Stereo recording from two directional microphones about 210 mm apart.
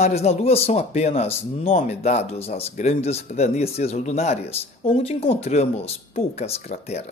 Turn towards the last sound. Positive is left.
turn(degrees=30)  # may be behind; listen again after turning